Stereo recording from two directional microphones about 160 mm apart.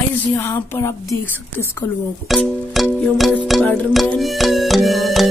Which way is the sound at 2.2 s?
Centre (ahead or behind).